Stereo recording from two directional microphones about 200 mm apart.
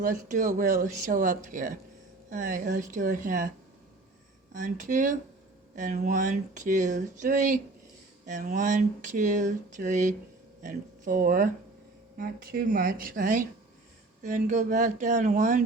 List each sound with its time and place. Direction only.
0.0 s speech: 40° right (ahead or behind)
4.5 s speech: 40° right (ahead or behind)